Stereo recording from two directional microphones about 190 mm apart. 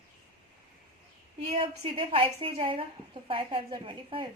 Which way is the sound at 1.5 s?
30° right (ahead or behind).